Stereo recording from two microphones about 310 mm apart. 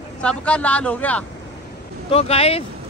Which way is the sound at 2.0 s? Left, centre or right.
Centre.